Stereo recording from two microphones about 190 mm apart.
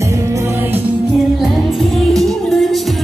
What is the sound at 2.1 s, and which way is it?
Music, centre (ahead or behind).